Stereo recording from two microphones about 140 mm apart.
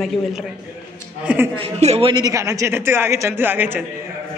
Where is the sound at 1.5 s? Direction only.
50° right (ahead or behind).